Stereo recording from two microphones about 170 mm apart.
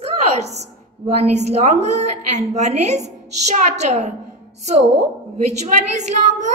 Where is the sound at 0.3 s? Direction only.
40° right (ahead or behind).